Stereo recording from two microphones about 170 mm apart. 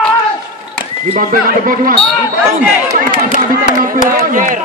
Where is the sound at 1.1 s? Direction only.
55° right (ahead or behind).